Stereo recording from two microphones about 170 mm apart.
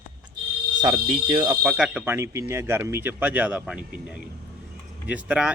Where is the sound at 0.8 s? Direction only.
25° right (ahead or behind).